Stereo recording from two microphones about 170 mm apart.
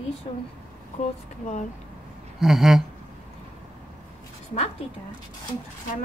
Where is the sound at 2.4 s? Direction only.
Centre (ahead or behind).